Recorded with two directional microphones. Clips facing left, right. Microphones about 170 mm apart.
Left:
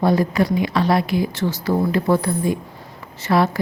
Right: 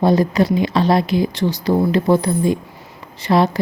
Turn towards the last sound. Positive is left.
turn(degrees=-20)  # may be behind; listen again after turning